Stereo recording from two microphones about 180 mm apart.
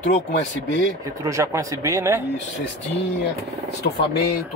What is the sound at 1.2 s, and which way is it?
Speech, 20° right (ahead or behind).